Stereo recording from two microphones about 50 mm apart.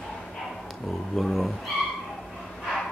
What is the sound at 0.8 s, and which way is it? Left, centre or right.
Speech, centre.